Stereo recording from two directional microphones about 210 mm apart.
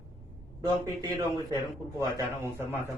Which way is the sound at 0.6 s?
20° right (ahead or behind).